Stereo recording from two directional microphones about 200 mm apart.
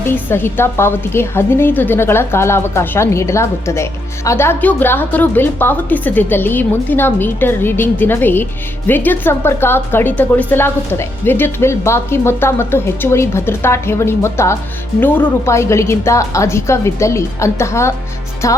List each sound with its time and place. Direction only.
0.0 s a woman's voice: 10° left (ahead or behind)